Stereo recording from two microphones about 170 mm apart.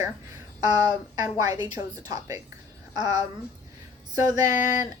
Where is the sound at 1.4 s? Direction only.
20° right (ahead or behind).